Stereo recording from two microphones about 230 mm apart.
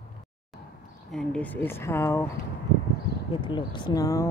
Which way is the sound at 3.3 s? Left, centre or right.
Left.